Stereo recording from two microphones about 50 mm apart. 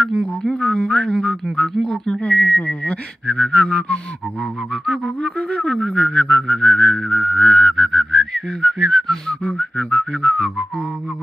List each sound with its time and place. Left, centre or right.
0.2 s speech: centre
5.6 s speech: centre
6.7 s whistling: centre
9.4 s speech: centre
10.2 s speech: centre